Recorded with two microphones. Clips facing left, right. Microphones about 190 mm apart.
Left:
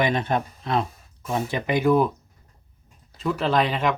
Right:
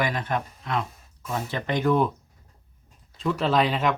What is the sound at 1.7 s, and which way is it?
Speech, 10° left (ahead or behind).